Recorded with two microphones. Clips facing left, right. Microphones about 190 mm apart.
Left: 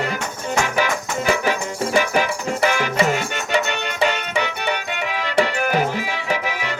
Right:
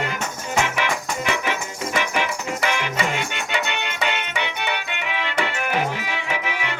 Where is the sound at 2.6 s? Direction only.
40° left (ahead or behind).